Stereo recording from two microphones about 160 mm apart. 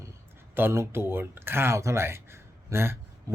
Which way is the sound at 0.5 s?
15° right (ahead or behind).